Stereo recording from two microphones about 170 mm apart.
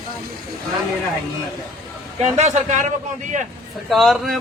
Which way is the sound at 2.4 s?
45° right (ahead or behind).